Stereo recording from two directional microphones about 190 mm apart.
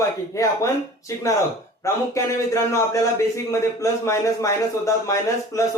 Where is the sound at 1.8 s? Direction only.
15° left (ahead or behind).